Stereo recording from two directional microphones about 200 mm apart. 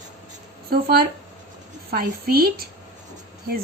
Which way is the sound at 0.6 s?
50° right (ahead or behind).